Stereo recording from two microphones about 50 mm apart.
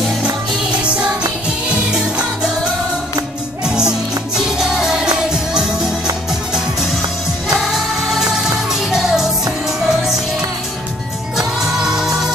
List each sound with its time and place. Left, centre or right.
0.2 s music: right
3.6 s music: centre
7.4 s music: centre
11.3 s music: centre